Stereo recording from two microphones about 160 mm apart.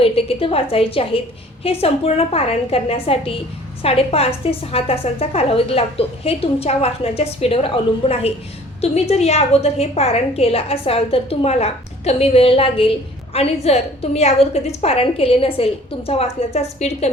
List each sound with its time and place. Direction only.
0.0 s a woman's voice: 35° left (ahead or behind)